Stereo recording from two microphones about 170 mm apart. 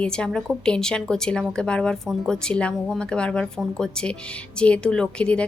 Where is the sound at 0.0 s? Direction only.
5° left (ahead or behind).